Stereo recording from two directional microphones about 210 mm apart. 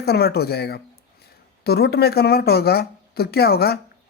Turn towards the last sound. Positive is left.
turn(degrees=50)  # may be behind; listen again after turning